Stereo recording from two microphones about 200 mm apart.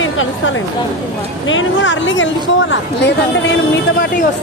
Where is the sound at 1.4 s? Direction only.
75° left (ahead or behind).